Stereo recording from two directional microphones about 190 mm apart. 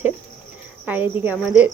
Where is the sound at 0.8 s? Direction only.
10° right (ahead or behind).